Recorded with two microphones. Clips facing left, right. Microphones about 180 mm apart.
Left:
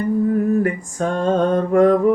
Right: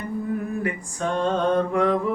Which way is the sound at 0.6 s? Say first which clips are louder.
Left 6 dB; 45° left (ahead or behind).